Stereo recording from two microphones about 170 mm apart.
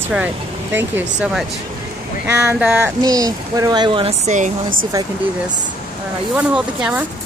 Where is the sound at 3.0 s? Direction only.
20° right (ahead or behind); by 4.8 s 45° right (ahead or behind).